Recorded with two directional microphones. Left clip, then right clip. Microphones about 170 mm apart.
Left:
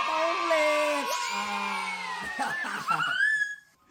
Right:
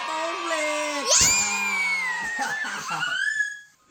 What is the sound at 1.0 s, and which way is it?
Music, 50° right (ahead or behind).